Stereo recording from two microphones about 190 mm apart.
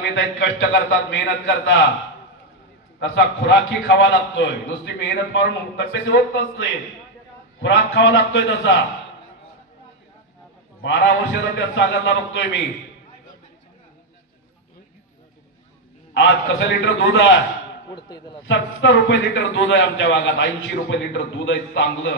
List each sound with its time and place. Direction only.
0.1 s a man's voice: 70° left (ahead or behind)
1.1 s a man's voice: 85° left
3.0 s a man's voice: 75° left (ahead or behind)
10.8 s a man's voice: 65° left (ahead or behind)
16.1 s a man's voice: 80° left
17.8 s a man's voice: 20° left (ahead or behind)
18.5 s a man's voice: 80° left